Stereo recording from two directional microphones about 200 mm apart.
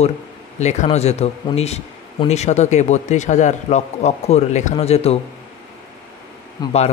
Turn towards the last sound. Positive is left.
turn(degrees=20)  # may be behind; listen again after turning